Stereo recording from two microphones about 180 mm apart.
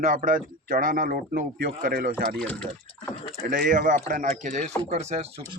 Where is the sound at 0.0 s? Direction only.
50° right (ahead or behind).